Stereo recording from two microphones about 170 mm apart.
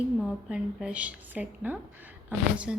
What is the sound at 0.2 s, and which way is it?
A woman's voice, centre (ahead or behind).